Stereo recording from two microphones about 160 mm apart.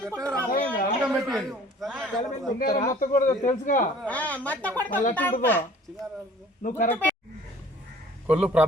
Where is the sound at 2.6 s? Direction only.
60° left (ahead or behind).